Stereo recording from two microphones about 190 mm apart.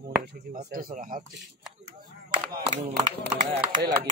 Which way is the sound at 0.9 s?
45° right (ahead or behind).